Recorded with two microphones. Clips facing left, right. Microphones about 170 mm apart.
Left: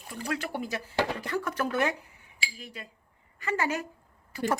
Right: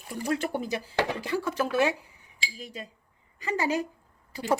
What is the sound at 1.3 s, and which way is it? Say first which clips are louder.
Speech: right 2 dB; 10° right (ahead or behind).